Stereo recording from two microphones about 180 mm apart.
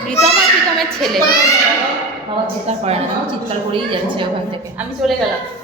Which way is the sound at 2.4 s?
35° right (ahead or behind).